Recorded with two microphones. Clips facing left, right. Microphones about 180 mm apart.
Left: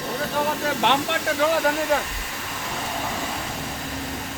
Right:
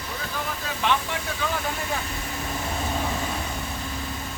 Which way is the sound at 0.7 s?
70° left (ahead or behind).